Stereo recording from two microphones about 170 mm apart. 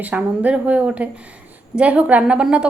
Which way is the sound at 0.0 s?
10° right (ahead or behind).